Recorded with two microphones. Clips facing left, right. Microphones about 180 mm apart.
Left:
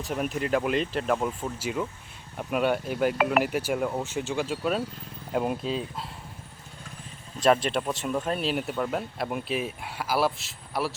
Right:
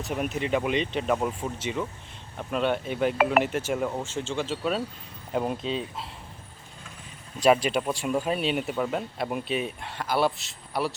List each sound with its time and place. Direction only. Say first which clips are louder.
0.0 s speech: even; centre (ahead or behind)
4.0 s speech: left 1 dB; 15° left (ahead or behind)
4.4 s speech: even; centre (ahead or behind)
7.4 s speech: right 1 dB; centre (ahead or behind)